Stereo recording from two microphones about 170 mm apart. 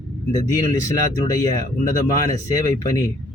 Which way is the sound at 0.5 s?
20° left (ahead or behind).